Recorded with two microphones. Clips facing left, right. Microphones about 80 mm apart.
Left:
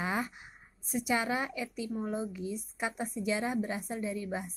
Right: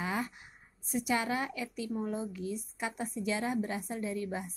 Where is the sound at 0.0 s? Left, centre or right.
Centre.